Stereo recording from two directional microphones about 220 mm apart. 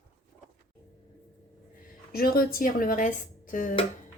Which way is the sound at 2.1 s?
45° left (ahead or behind).